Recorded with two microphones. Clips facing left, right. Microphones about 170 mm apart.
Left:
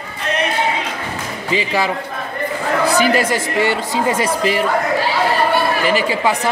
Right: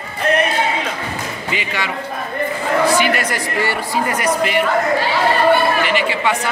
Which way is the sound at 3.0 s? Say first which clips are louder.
Left 3 dB; 25° left (ahead or behind).